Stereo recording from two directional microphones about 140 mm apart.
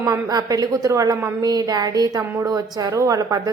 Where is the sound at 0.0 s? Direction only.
25° right (ahead or behind).